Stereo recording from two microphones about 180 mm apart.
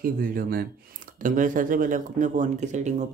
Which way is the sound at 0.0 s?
50° right (ahead or behind).